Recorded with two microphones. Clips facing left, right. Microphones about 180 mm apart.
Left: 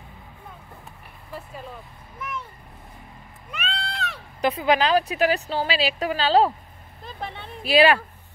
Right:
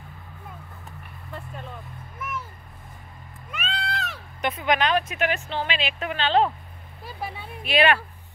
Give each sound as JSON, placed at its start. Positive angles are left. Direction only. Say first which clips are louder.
{"t": 1.3, "sound": "speech", "louder": "left 1 dB", "side_deg": 5}
{"t": 2.1, "sound": "vehicle", "louder": "even", "side_deg": -5}
{"t": 3.5, "sound": "a sound", "louder": "right 1 dB", "side_deg": 0}
{"t": 4.4, "sound": "a woman's voice", "louder": "left 3 dB", "side_deg": 35}
{"t": 7.1, "sound": "speech", "louder": "even", "side_deg": -5}
{"t": 7.6, "sound": "a woman's voice", "louder": "left 4 dB", "side_deg": 35}